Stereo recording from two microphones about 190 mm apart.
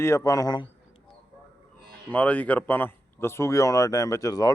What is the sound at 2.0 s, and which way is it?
Speech, 5° left (ahead or behind).